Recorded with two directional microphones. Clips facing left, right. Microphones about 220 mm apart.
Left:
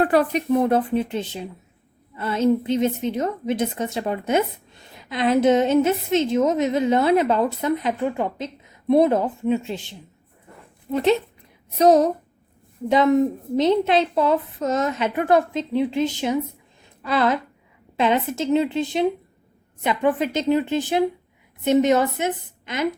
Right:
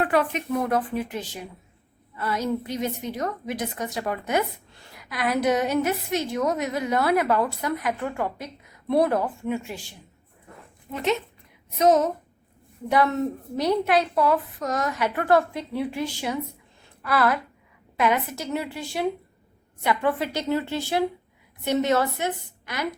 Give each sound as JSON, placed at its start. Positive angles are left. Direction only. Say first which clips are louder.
{"t": 0.0, "sound": "a woman's voice", "louder": "left 4 dB", "side_deg": 35}
{"t": 10.9, "sound": "a woman's voice", "louder": "left 6 dB", "side_deg": 30}
{"t": 12.9, "sound": "a woman's voice", "louder": "left 5 dB", "side_deg": 20}